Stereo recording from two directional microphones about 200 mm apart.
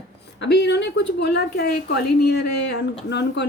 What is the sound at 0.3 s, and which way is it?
A woman's voice, 55° left (ahead or behind).